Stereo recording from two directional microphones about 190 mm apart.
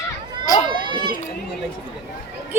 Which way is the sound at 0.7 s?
25° right (ahead or behind).